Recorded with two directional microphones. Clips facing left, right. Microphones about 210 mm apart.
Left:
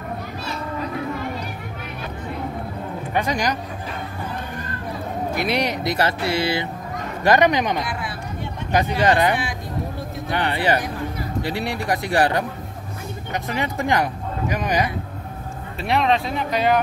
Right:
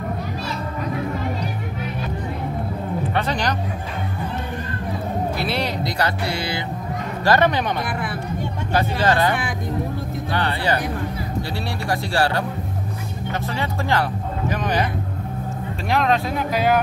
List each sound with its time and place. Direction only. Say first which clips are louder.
3.2 s speech: left 3 dB; 10° left (ahead or behind)
5.4 s speech: left 2 dB; 15° left (ahead or behind)
8.7 s speech: left 1 dB; 20° left (ahead or behind)
15.9 s speech: even; centre (ahead or behind)